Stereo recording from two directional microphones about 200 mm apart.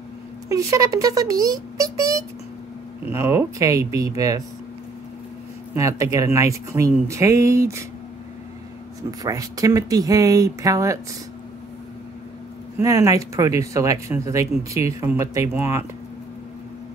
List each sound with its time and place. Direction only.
0.5 s speech: 15° right (ahead or behind)
5.8 s speech: 15° right (ahead or behind)
9.2 s speech: 15° right (ahead or behind)
12.7 s speech: 15° right (ahead or behind)